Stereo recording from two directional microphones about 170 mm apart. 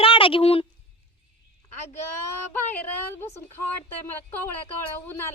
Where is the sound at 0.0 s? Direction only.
30° left (ahead or behind).